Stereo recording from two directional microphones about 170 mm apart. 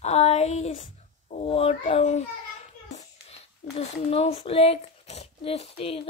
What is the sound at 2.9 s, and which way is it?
A child's voice, 40° left (ahead or behind).